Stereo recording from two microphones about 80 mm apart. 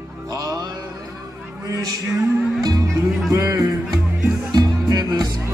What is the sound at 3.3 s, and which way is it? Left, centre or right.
Speech, right.